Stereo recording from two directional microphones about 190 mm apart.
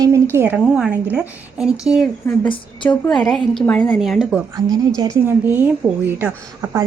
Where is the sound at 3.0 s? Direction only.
5° left (ahead or behind).